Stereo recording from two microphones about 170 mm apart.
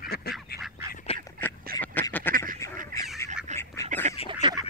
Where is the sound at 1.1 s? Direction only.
35° left (ahead or behind).